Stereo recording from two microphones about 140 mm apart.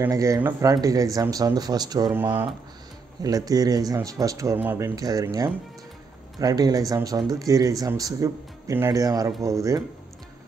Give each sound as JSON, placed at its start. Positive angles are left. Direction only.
{"t": 0.0, "sound": "speech", "side_deg": -25}
{"t": 3.2, "sound": "speech", "side_deg": -25}